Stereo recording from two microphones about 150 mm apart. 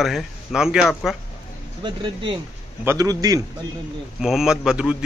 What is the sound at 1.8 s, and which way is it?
A man's voice, 30° right (ahead or behind).